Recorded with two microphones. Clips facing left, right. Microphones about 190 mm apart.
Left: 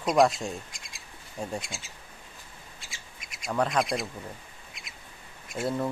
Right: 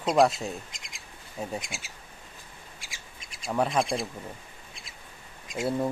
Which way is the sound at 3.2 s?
30° right (ahead or behind).